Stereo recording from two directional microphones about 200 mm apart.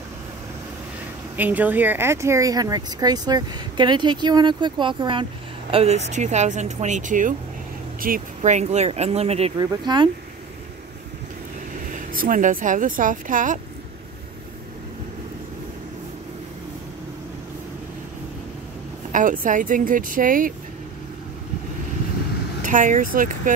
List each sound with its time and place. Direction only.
1.3 s speech: 10° right (ahead or behind); by 8.2 s 45° right (ahead or behind)
8.4 s speech: 35° right (ahead or behind)
11.9 s speech: 45° right (ahead or behind)
19.1 s speech: 40° right (ahead or behind)
22.6 s speech: 40° right (ahead or behind)